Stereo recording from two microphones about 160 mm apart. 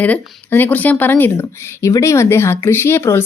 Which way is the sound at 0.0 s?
10° left (ahead or behind).